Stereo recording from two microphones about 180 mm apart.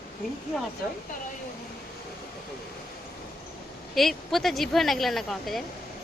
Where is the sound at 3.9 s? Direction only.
Centre (ahead or behind).